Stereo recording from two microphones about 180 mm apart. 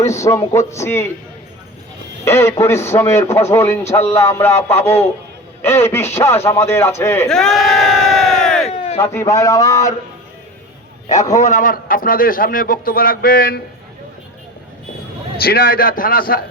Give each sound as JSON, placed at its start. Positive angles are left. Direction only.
{"t": 0.0, "sound": "speech", "side_deg": 15}
{"t": 2.2, "sound": "speech", "side_deg": 15}
{"t": 5.7, "sound": "speech", "side_deg": 15}
{"t": 7.3, "sound": "crowd", "side_deg": 0}
{"t": 8.6, "sound": "a sound", "side_deg": 35}
{"t": 9.0, "sound": "speech", "side_deg": 15}
{"t": 11.3, "sound": "a man's voice", "side_deg": 45}
{"t": 15.4, "sound": "a man's voice", "side_deg": 60}